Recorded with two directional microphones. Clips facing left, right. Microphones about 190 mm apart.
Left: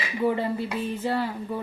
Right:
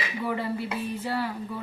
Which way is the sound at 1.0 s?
25° left (ahead or behind).